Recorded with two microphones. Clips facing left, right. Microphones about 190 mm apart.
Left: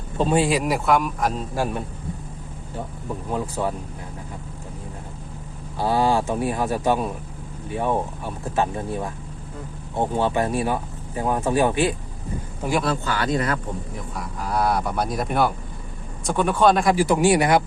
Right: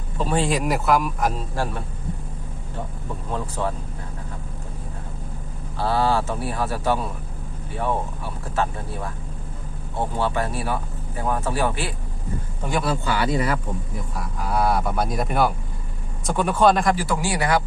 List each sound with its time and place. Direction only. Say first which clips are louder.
0.3 s speech: even; 5° left (ahead or behind)
1.5 s a man's voice: left 2 dB; 15° left (ahead or behind)
3.2 s a man's voice: left 1 dB; 10° left (ahead or behind)
5.7 s a man's voice: left 1 dB; 15° left (ahead or behind)
12.6 s speech: left 1 dB; 5° right (ahead or behind)
16.9 s speech: left 6 dB; 15° left (ahead or behind)